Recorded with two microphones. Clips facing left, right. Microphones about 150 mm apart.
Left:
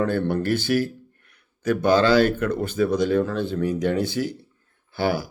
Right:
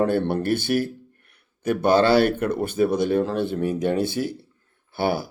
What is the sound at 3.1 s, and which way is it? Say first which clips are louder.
Speech: even; 25° right (ahead or behind).